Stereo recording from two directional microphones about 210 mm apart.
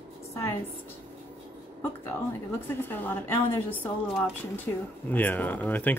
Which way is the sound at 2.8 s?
10° left (ahead or behind).